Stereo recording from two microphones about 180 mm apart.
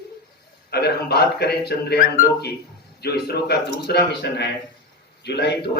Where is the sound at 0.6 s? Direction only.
65° left (ahead or behind).